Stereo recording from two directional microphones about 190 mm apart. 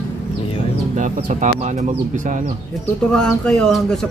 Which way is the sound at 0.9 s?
40° right (ahead or behind).